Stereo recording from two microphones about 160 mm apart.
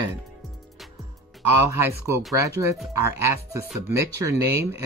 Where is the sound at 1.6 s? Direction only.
15° right (ahead or behind).